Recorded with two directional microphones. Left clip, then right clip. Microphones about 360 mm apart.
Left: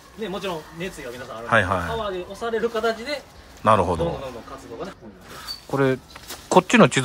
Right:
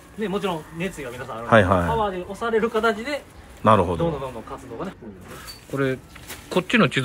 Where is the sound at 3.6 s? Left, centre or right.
Centre.